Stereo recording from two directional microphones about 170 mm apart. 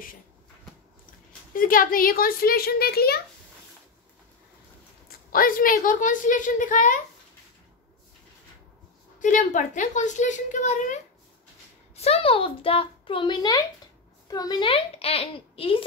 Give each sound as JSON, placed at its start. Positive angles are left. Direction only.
{"t": 1.5, "sound": "a child's voice", "side_deg": 55}
{"t": 5.3, "sound": "a woman's voice", "side_deg": 55}
{"t": 9.2, "sound": "a woman's voice", "side_deg": 50}